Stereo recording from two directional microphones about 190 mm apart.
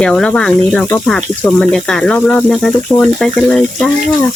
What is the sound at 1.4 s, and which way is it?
Speech, 5° left (ahead or behind).